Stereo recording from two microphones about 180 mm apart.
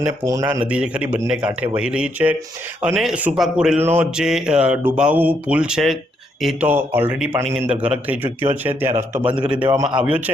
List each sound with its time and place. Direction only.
0.0 s speech: 15° right (ahead or behind)
0.7 s speech: 5° right (ahead or behind)